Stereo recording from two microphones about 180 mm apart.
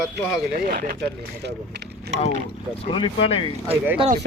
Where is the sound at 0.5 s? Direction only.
50° right (ahead or behind); by 2.1 s 65° right (ahead or behind).